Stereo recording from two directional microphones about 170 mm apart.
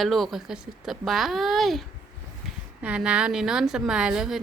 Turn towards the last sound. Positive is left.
turn(degrees=-5)  # may be behind; listen again after turning